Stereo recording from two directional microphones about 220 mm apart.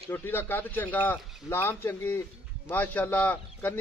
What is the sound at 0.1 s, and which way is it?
A man's voice, 10° left (ahead or behind).